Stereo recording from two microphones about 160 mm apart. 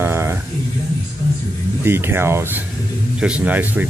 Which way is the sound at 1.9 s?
15° right (ahead or behind).